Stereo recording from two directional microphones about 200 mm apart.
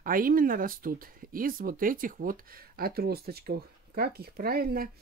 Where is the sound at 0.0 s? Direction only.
45° right (ahead or behind).